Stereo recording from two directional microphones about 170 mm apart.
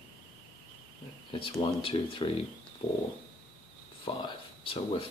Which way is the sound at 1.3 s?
30° left (ahead or behind).